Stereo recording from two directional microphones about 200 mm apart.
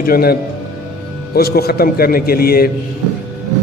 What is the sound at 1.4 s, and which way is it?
A man's voice, 50° left (ahead or behind).